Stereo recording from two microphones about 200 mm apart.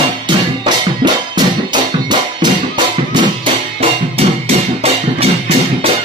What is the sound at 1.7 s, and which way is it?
Music, 20° right (ahead or behind).